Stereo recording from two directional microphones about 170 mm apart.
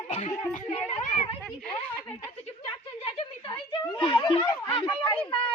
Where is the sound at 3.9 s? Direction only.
30° left (ahead or behind).